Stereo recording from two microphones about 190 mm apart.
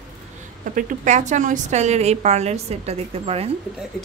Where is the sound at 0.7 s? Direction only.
45° right (ahead or behind).